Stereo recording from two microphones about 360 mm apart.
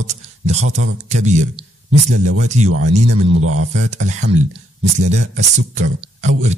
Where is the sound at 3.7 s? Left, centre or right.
Centre.